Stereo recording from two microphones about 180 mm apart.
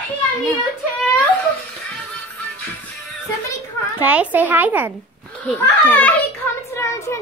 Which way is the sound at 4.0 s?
10° right (ahead or behind).